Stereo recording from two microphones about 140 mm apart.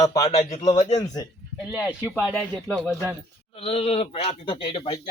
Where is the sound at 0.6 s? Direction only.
30° left (ahead or behind).